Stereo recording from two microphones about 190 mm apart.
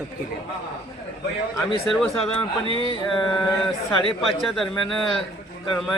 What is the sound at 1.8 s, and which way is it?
A man's voice, centre (ahead or behind).